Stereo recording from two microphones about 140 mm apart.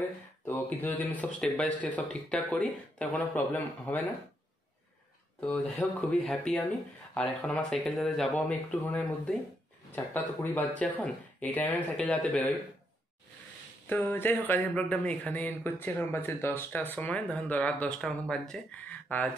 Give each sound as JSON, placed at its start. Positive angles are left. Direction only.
{"t": 0.5, "sound": "speech", "side_deg": 15}
{"t": 5.4, "sound": "speech", "side_deg": 10}
{"t": 13.8, "sound": "speech", "side_deg": 15}